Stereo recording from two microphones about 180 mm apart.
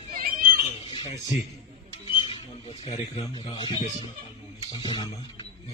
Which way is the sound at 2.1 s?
30° left (ahead or behind).